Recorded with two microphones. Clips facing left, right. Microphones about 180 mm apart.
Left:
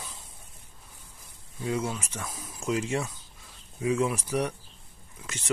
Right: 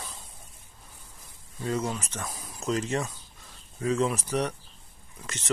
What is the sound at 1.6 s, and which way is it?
Speech, 5° left (ahead or behind).